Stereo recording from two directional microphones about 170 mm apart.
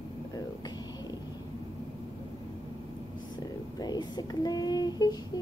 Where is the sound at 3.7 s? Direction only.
25° left (ahead or behind).